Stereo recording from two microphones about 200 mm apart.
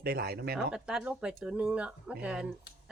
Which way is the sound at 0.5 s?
5° right (ahead or behind).